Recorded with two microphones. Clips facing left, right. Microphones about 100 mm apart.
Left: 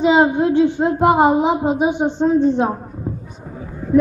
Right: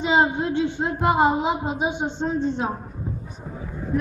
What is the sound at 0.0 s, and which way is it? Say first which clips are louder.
A woman's voice: left 7 dB; 60° left (ahead or behind).